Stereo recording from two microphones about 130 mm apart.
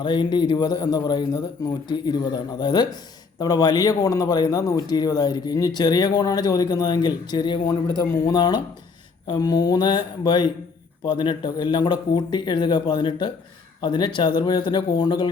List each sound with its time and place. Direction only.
0.0 s speech: 40° left (ahead or behind)